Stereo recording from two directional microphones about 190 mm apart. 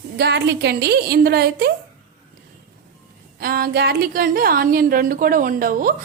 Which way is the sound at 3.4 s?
50° right (ahead or behind).